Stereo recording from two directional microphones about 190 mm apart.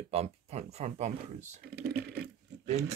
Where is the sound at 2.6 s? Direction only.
35° right (ahead or behind).